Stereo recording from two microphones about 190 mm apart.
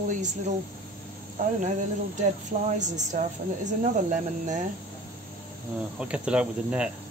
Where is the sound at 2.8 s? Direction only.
40° right (ahead or behind).